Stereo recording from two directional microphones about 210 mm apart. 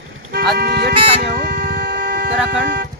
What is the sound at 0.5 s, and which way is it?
Speech, 50° right (ahead or behind).